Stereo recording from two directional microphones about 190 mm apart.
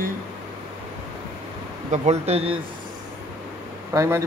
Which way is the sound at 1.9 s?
35° right (ahead or behind).